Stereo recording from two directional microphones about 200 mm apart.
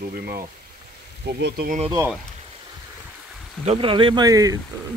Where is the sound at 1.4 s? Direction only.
60° right (ahead or behind).